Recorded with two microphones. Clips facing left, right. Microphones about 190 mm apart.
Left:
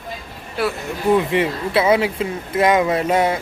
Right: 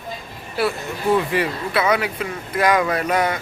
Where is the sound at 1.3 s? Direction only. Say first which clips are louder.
Left 3 dB; 25° left (ahead or behind).